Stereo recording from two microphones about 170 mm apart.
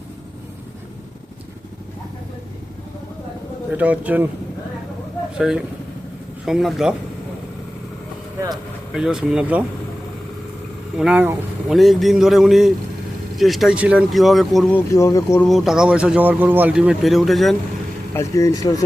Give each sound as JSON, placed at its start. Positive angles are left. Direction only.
{"t": 3.7, "sound": "speech", "side_deg": -10}
{"t": 5.4, "sound": "speech", "side_deg": -5}
{"t": 8.9, "sound": "speech", "side_deg": -5}
{"t": 10.9, "sound": "speech", "side_deg": -5}
{"t": 14.8, "sound": "speech", "side_deg": 20}
{"t": 15.4, "sound": "speech", "side_deg": 0}
{"t": 18.1, "sound": "speech", "side_deg": 15}